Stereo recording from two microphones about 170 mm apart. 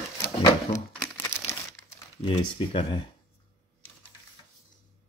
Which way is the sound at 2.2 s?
30° left (ahead or behind).